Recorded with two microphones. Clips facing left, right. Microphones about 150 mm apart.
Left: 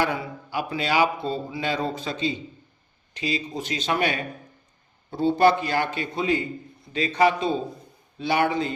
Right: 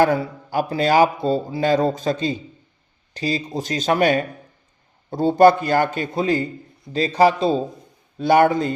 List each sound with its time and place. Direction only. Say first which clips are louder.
0.0 s speech: right 8 dB; 40° right (ahead or behind)
8.2 s speech: right 7 dB; 45° right (ahead or behind)